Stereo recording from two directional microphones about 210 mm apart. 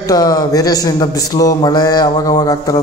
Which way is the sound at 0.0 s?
20° left (ahead or behind).